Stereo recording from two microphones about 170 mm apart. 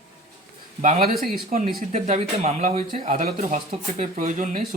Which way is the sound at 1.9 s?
45° right (ahead or behind).